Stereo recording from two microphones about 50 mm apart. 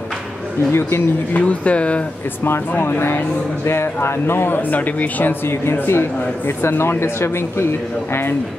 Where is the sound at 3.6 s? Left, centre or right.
Left.